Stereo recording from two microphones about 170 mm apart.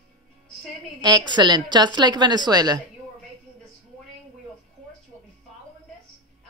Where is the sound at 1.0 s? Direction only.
25° right (ahead or behind).